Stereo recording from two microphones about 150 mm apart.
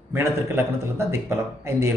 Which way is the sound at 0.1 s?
15° right (ahead or behind).